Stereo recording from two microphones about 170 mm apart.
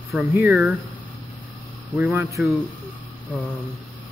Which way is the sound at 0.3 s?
10° right (ahead or behind).